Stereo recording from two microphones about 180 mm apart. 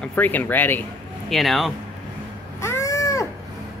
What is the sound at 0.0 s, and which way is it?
Speech, 10° left (ahead or behind).